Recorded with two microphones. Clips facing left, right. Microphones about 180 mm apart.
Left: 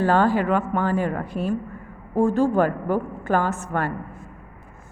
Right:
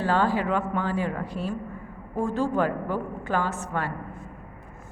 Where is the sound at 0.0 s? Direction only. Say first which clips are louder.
Left 5 dB; 50° left (ahead or behind).